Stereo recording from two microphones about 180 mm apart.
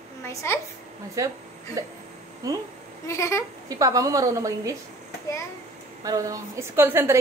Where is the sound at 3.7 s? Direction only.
20° right (ahead or behind).